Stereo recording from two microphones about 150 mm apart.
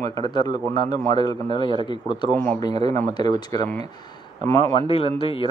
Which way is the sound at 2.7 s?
50° right (ahead or behind).